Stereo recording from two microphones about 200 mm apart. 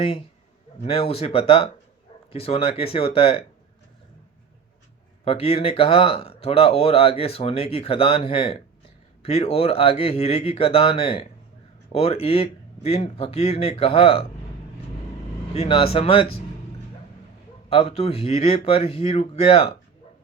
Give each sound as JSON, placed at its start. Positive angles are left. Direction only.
{"t": 0.0, "sound": "speech", "side_deg": 25}
{"t": 5.2, "sound": "speech", "side_deg": 30}
{"t": 15.5, "sound": "speech", "side_deg": 30}
{"t": 17.7, "sound": "speech", "side_deg": 30}